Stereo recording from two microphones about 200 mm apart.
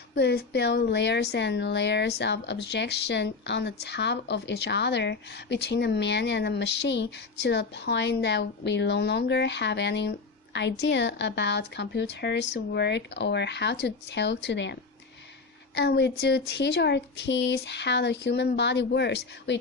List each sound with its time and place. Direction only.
0.1 s speech: 60° left (ahead or behind)